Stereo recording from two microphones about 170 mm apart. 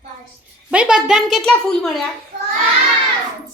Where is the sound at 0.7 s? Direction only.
5° right (ahead or behind).